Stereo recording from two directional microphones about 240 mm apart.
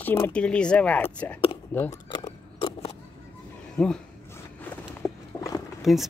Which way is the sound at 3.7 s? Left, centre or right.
Centre.